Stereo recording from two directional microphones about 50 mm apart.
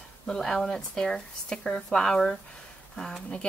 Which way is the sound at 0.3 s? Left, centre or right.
Centre.